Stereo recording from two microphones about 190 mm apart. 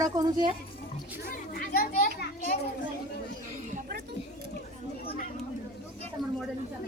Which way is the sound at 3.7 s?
55° right (ahead or behind).